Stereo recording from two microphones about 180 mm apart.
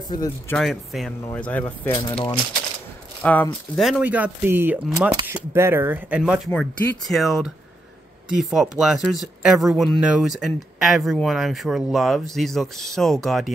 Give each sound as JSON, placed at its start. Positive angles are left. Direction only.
{"t": 0.1, "sound": "speech", "side_deg": 20}
{"t": 0.6, "sound": "speech", "side_deg": 0}
{"t": 2.0, "sound": "speech", "side_deg": 25}
{"t": 3.2, "sound": "speech", "side_deg": 10}